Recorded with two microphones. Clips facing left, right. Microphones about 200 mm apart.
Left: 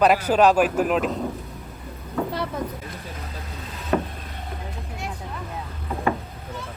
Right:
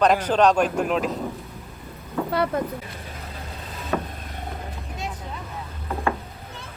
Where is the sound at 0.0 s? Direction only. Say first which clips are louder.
Left 1 dB; 5° left (ahead or behind).